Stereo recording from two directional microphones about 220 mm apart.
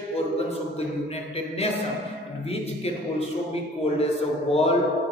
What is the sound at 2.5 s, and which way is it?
Speech, 25° left (ahead or behind).